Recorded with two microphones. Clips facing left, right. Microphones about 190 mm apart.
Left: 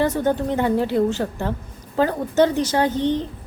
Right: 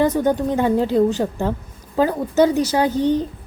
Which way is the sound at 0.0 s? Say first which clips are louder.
Right 3 dB; 15° right (ahead or behind).